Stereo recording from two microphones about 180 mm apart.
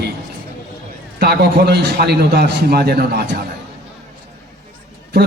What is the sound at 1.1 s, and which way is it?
A man's voice, 65° right (ahead or behind).